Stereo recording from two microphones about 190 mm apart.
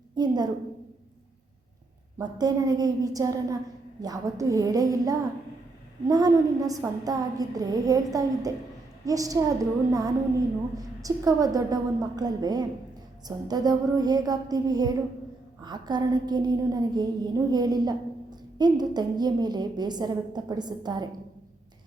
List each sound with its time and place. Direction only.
0.2 s a woman's voice: 20° right (ahead or behind)
2.1 s a woman's voice: 20° right (ahead or behind)